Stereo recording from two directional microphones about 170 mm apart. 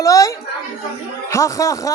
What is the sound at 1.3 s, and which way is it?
Speech, 20° left (ahead or behind).